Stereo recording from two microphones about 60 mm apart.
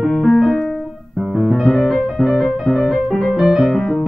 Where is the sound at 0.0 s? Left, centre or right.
Centre.